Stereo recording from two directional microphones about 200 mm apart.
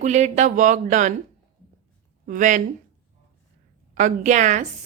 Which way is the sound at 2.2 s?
40° right (ahead or behind).